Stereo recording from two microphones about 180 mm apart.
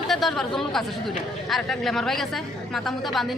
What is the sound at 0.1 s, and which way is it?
A woman's voice, centre (ahead or behind).